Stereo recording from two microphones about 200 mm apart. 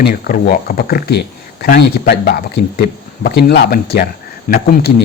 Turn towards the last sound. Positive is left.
turn(degrees=50)  # may be behind; listen again after turning